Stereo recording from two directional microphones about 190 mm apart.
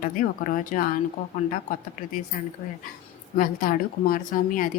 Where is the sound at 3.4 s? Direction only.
45° left (ahead or behind).